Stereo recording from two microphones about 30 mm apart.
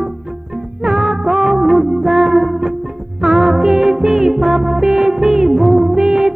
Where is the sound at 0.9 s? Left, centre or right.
Centre.